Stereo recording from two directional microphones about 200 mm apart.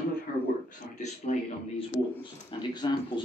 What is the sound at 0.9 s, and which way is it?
Speech, 35° left (ahead or behind).